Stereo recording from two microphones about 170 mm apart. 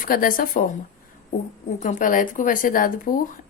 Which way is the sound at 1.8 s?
50° left (ahead or behind).